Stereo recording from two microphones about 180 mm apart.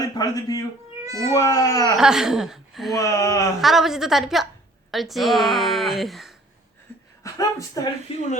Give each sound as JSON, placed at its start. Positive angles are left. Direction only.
{"t": 0.0, "sound": "a man's voice", "side_deg": 20}
{"t": 1.0, "sound": "cat", "side_deg": -20}
{"t": 1.3, "sound": "speech", "side_deg": 20}
{"t": 2.0, "sound": "speech", "side_deg": -5}
{"t": 3.0, "sound": "speech", "side_deg": 20}
{"t": 3.6, "sound": "speech", "side_deg": 0}
{"t": 7.2, "sound": "speech", "side_deg": 20}